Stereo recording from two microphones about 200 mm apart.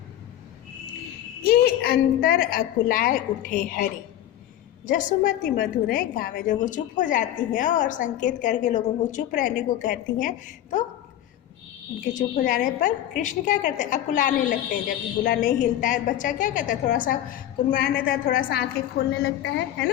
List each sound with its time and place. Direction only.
1.5 s a woman's voice: 50° left (ahead or behind)
4.9 s a woman's voice: 40° left (ahead or behind)
12.1 s a woman's voice: 45° left (ahead or behind)